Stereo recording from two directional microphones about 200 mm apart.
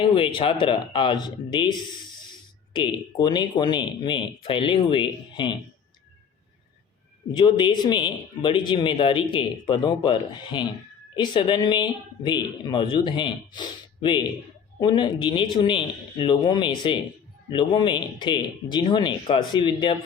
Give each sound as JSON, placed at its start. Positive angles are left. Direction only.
{"t": 0.1, "sound": "speech", "side_deg": 25}
{"t": 7.3, "sound": "speech", "side_deg": 25}